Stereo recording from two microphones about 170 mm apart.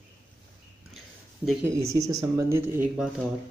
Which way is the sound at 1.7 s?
20° right (ahead or behind).